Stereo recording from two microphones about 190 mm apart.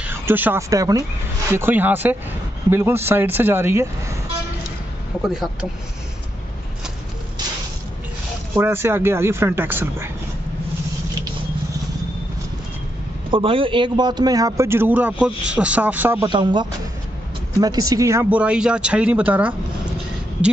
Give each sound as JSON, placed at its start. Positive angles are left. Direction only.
{"t": 0.0, "sound": "speech", "side_deg": -10}
{"t": 5.2, "sound": "speech", "side_deg": 0}
{"t": 8.5, "sound": "speech", "side_deg": -15}
{"t": 13.3, "sound": "speech", "side_deg": -30}